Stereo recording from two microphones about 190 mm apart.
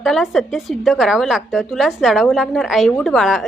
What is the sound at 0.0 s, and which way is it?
A woman's voice, centre (ahead or behind).